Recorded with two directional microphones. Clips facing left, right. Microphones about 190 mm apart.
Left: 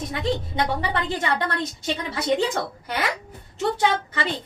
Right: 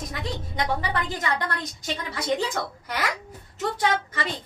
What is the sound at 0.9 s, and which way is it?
A woman's voice, 25° left (ahead or behind).